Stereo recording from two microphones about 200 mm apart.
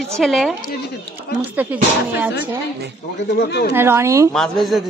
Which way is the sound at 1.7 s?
5° right (ahead or behind).